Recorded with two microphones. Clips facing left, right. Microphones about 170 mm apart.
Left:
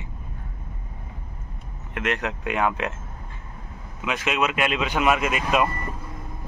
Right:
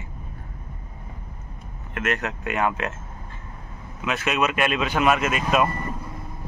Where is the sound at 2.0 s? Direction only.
15° left (ahead or behind).